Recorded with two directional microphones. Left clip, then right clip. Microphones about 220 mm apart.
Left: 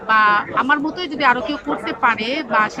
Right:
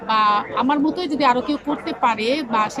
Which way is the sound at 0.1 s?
20° right (ahead or behind).